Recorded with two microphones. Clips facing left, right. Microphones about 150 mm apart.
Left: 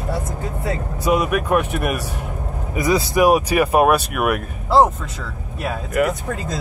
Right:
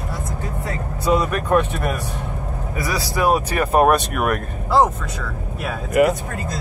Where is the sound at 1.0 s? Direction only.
10° left (ahead or behind).